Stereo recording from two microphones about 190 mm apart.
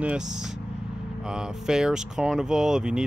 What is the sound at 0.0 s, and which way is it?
Speech, 5° right (ahead or behind).